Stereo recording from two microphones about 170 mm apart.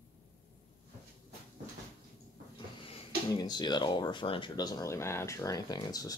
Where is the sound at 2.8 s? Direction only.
30° left (ahead or behind).